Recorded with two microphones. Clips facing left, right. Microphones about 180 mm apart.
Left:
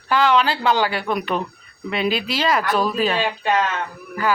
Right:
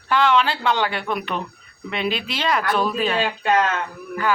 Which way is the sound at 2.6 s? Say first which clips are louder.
Left 1 dB; 40° left (ahead or behind).